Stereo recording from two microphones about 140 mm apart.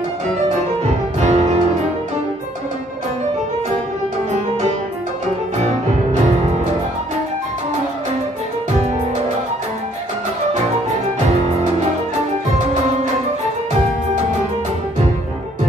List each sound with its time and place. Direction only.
1.2 s music: 55° right (ahead or behind)